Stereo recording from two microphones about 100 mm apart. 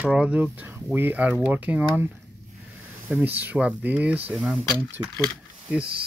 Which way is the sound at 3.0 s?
20° right (ahead or behind).